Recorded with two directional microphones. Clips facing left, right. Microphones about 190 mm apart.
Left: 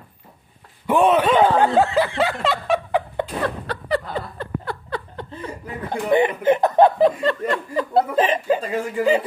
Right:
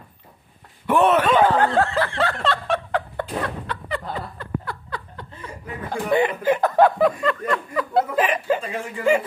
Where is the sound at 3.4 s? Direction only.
35° left (ahead or behind).